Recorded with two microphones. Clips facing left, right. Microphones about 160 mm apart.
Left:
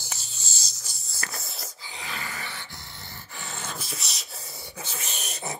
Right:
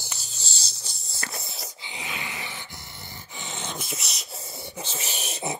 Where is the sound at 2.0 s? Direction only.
20° right (ahead or behind).